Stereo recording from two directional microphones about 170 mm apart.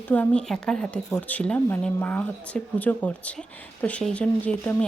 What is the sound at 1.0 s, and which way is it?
Speech, 20° left (ahead or behind).